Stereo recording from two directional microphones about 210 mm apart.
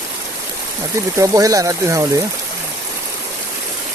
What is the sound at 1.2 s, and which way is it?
Speech, 15° right (ahead or behind).